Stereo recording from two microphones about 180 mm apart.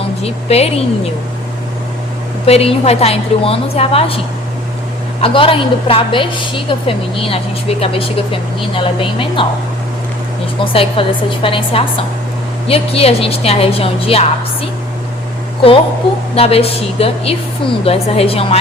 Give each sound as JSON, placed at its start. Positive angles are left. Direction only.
{"t": 0.2, "sound": "a woman's voice", "side_deg": 35}
{"t": 2.5, "sound": "a woman's voice", "side_deg": 35}
{"t": 5.2, "sound": "a woman's voice", "side_deg": 30}
{"t": 10.6, "sound": "a woman's voice", "side_deg": 30}
{"t": 16.3, "sound": "a woman's voice", "side_deg": 35}